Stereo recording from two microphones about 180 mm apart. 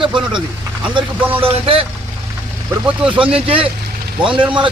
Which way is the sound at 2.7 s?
10° right (ahead or behind).